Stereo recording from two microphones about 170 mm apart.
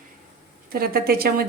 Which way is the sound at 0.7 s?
60° right (ahead or behind).